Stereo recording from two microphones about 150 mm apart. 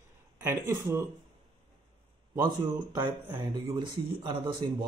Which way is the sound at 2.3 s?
25° right (ahead or behind).